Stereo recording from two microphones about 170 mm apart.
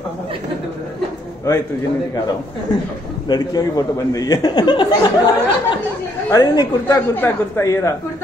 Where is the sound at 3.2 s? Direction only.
25° left (ahead or behind).